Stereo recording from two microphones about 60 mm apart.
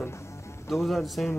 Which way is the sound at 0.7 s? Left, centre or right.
Centre.